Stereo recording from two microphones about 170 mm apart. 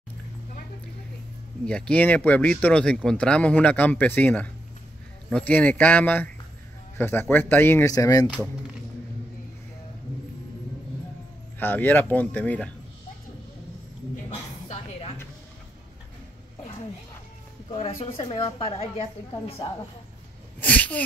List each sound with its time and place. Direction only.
1.7 s speech: 5° left (ahead or behind)
11.6 s speech: 10° left (ahead or behind)
14.7 s a sound: 40° left (ahead or behind)
17.7 s a woman's voice: 35° left (ahead or behind)
20.6 s speech: 10° left (ahead or behind)